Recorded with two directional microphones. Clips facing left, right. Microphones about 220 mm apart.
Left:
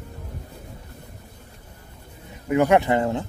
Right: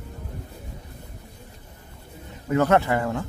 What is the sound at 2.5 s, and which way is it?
Speech, 15° left (ahead or behind).